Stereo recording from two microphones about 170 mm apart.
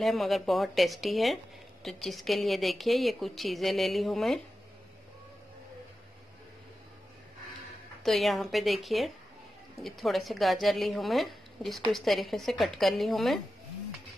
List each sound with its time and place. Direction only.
0.0 s speech: centre (ahead or behind)
8.0 s speech: centre (ahead or behind)